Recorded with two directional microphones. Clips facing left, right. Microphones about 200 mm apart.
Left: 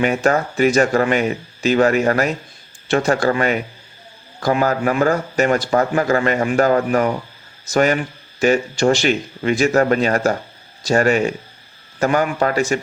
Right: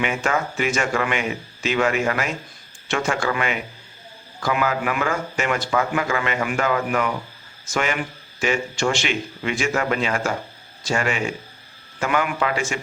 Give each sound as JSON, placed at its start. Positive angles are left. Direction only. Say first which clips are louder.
{"t": 0.0, "sound": "speech", "louder": "left 6 dB", "side_deg": 40}